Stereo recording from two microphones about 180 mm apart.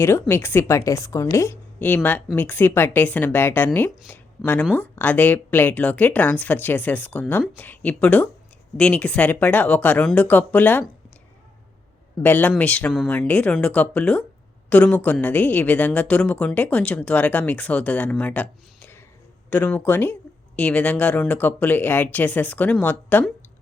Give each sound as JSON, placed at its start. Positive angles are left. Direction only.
{"t": 0.0, "sound": "a woman's voice", "side_deg": 15}
{"t": 12.2, "sound": "a woman's voice", "side_deg": 10}